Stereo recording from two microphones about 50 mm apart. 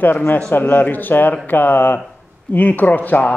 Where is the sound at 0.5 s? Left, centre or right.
Left.